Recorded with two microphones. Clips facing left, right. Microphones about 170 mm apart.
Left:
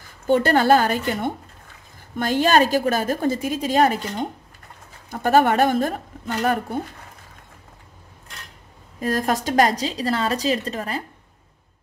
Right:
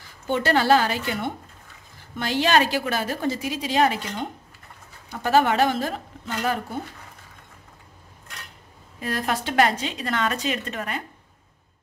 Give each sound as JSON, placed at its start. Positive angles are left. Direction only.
{"t": 0.3, "sound": "a woman's voice", "side_deg": 50}
{"t": 5.1, "sound": "a woman's voice", "side_deg": 50}
{"t": 9.0, "sound": "a woman's voice", "side_deg": 40}